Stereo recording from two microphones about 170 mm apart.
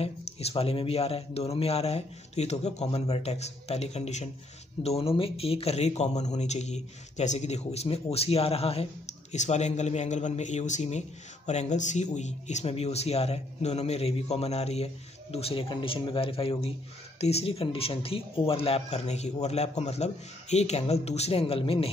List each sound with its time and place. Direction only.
0.0 s speech: 35° left (ahead or behind)